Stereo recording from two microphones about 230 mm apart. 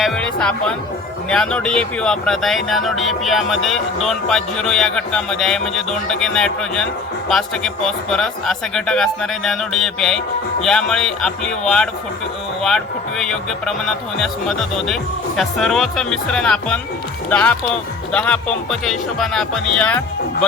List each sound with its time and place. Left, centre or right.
0.0 s speech: centre